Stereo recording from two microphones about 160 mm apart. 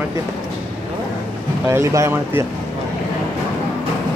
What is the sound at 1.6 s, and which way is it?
Speech, 15° right (ahead or behind).